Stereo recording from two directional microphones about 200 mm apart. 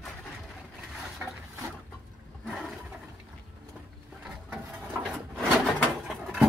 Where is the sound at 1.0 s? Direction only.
Centre (ahead or behind).